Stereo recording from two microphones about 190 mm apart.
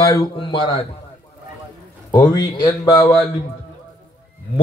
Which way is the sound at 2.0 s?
20° left (ahead or behind).